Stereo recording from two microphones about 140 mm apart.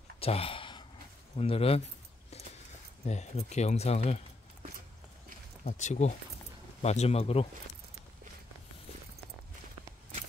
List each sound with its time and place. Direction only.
0.2 s gasp: 45° left (ahead or behind)
1.3 s speech: 45° left (ahead or behind)
3.1 s speech: 55° left (ahead or behind)
5.6 s speech: 60° left (ahead or behind)